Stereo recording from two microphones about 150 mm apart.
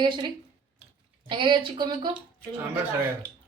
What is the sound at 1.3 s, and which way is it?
Speech, 35° right (ahead or behind).